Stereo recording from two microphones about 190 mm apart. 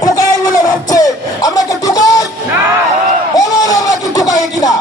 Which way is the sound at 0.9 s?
20° left (ahead or behind).